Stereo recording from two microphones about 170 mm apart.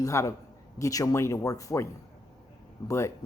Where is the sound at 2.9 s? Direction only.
15° left (ahead or behind).